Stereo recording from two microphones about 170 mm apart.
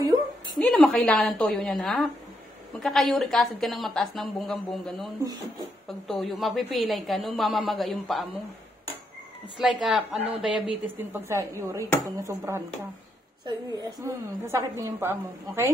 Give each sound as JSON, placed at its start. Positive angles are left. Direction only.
{"t": 0.6, "sound": "a woman's voice", "side_deg": 0}
{"t": 9.6, "sound": "a woman's voice", "side_deg": 0}
{"t": 10.1, "sound": "speech", "side_deg": -35}
{"t": 10.5, "sound": "a woman's voice", "side_deg": -15}
{"t": 13.7, "sound": "a woman's voice", "side_deg": -20}